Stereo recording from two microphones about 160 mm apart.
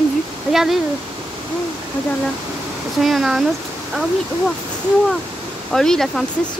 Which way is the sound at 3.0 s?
Centre (ahead or behind).